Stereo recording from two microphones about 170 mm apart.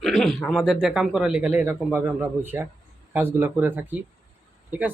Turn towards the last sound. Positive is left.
turn(degrees=-10)  # may be behind; listen again after turning